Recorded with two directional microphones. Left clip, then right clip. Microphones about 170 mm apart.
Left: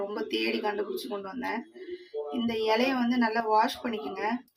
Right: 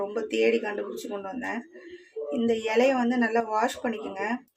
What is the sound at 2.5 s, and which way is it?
Speech, 45° right (ahead or behind).